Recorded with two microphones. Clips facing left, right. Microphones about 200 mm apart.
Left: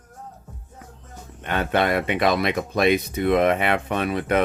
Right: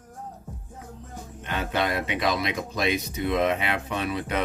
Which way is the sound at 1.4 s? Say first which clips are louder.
Left 5 dB; 60° left (ahead or behind).